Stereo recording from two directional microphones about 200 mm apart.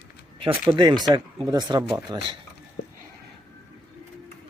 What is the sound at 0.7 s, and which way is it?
Speech, 20° right (ahead or behind).